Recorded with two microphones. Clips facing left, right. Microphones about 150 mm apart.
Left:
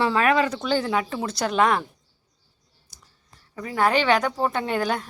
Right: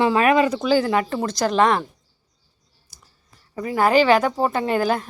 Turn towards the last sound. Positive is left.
turn(degrees=-5)  # may be behind; listen again after turning